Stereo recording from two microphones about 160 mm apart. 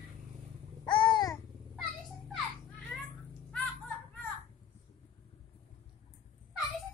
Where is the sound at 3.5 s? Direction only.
5° left (ahead or behind).